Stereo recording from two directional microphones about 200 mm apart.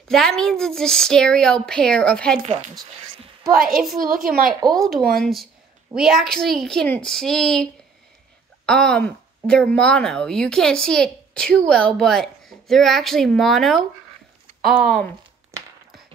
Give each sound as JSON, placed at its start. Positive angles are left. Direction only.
{"t": 0.1, "sound": "a child's voice", "side_deg": 0}
{"t": 3.5, "sound": "a woman's voice", "side_deg": -45}
{"t": 4.6, "sound": "speech", "side_deg": -20}
{"t": 5.2, "sound": "a child's voice", "side_deg": 0}
{"t": 8.6, "sound": "a child's voice", "side_deg": 5}